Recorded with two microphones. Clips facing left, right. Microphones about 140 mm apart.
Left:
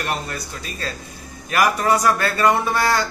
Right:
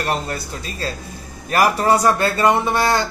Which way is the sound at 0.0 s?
30° right (ahead or behind).